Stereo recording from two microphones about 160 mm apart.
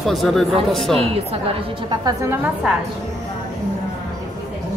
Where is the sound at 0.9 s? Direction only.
40° right (ahead or behind).